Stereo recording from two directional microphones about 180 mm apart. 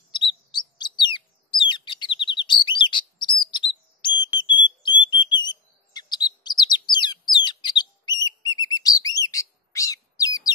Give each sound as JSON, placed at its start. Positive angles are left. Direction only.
{"t": 0.1, "sound": "bird", "side_deg": 25}